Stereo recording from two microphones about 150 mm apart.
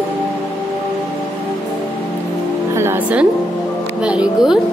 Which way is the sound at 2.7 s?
15° right (ahead or behind).